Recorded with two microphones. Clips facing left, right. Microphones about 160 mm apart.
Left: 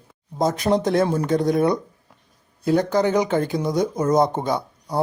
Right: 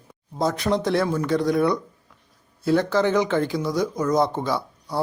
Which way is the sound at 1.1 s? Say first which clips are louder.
Left 2 dB; 35° left (ahead or behind).